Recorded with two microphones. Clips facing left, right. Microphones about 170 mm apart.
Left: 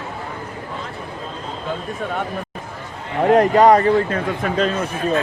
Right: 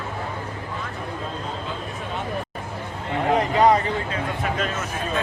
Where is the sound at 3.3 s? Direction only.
45° left (ahead or behind).